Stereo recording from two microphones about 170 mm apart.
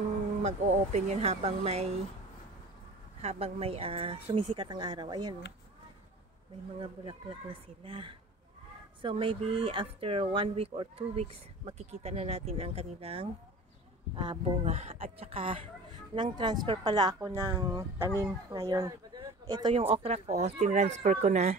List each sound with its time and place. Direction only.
0.4 s speech: 40° right (ahead or behind)
3.2 s speech: 35° right (ahead or behind)
6.8 s speech: 30° right (ahead or behind)
19.7 s speech: 35° right (ahead or behind)